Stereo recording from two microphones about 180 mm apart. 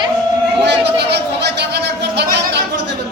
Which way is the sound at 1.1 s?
70° right (ahead or behind).